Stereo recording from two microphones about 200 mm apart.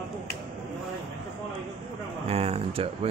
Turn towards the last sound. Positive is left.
turn(degrees=-30)  # may be behind; listen again after turning